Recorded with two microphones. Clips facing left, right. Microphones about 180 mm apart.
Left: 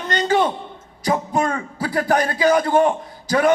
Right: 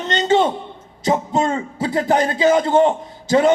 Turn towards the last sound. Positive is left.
turn(degrees=-25)  # may be behind; listen again after turning